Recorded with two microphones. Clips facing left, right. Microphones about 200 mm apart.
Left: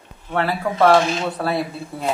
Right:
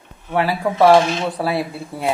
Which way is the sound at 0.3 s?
10° right (ahead or behind).